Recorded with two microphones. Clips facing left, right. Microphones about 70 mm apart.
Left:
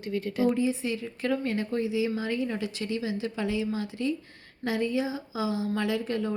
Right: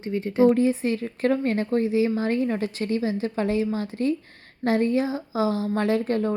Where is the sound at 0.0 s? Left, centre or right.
Right.